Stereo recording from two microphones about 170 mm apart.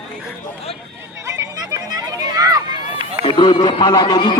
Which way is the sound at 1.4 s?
20° right (ahead or behind).